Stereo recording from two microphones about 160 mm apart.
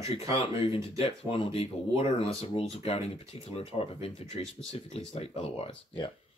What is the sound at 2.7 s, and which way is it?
Speech, 40° left (ahead or behind).